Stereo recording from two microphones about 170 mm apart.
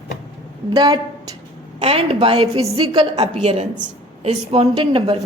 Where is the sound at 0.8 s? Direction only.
25° right (ahead or behind).